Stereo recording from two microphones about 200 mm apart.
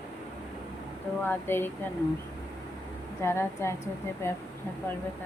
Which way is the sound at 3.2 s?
15° left (ahead or behind).